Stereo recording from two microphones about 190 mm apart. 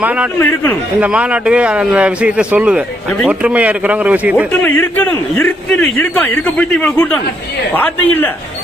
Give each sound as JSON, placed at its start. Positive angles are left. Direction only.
{"t": 0.0, "sound": "speech", "side_deg": -10}
{"t": 0.3, "sound": "a man's voice", "side_deg": 10}
{"t": 1.0, "sound": "speech", "side_deg": -5}
{"t": 4.6, "sound": "a man's voice", "side_deg": 10}